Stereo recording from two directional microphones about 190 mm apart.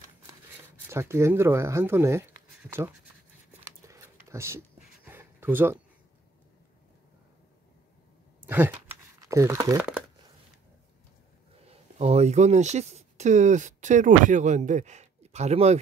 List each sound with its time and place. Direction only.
0.8 s speech: 15° right (ahead or behind)
3.6 s a sound: 15° right (ahead or behind)
8.5 s speech: 10° right (ahead or behind)
8.7 s crumpling: 15° right (ahead or behind)
9.8 s a sound: 5° right (ahead or behind)
12.0 s speech: 35° right (ahead or behind)